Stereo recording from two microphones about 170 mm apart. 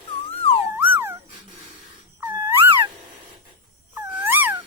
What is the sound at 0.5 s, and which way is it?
Music, 10° right (ahead or behind).